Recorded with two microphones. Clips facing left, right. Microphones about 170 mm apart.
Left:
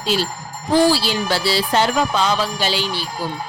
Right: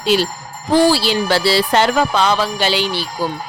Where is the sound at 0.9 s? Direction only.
70° right (ahead or behind).